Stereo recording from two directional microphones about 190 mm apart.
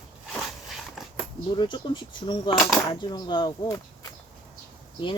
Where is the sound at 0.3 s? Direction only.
Centre (ahead or behind).